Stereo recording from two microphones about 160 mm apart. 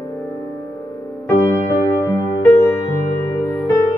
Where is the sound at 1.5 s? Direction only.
20° left (ahead or behind).